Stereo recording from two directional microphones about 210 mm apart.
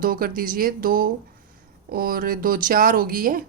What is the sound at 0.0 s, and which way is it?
Speech, 40° right (ahead or behind).